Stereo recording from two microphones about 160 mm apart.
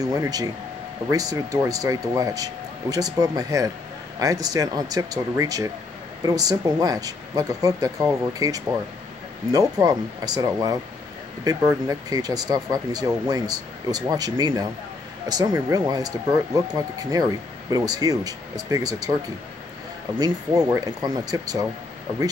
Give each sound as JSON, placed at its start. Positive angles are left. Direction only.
{"t": 0.0, "sound": "speech", "side_deg": -25}
{"t": 20.2, "sound": "speech", "side_deg": -25}